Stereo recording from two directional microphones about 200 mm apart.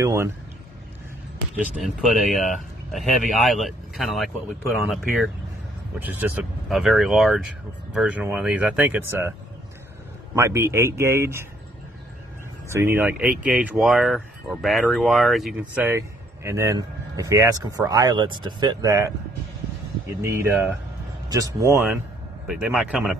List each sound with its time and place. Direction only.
0.0 s speech: 15° right (ahead or behind)
1.8 s speech: centre (ahead or behind)
10.3 s speech: 15° right (ahead or behind)
12.6 s speech: 10° right (ahead or behind)
20.2 s speech: 10° right (ahead or behind)
22.5 s speech: 5° right (ahead or behind)